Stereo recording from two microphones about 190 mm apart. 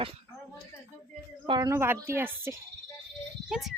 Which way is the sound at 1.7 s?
10° right (ahead or behind).